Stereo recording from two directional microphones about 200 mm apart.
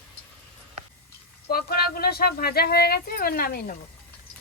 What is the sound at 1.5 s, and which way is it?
Speech, 50° left (ahead or behind).